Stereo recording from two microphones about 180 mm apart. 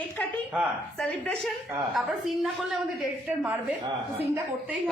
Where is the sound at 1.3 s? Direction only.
Centre (ahead or behind).